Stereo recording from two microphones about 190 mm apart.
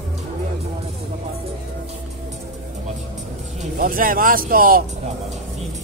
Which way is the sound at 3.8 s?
45° right (ahead or behind).